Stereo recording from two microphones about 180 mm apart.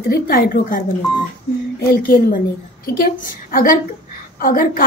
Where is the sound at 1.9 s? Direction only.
50° left (ahead or behind).